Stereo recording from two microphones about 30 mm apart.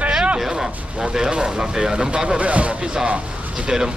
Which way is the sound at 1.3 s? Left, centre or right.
Right.